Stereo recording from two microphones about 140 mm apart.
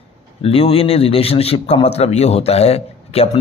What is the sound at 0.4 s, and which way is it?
A man's voice, 45° left (ahead or behind).